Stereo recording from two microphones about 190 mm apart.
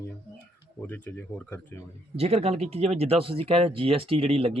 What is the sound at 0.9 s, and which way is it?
Speech, 10° left (ahead or behind).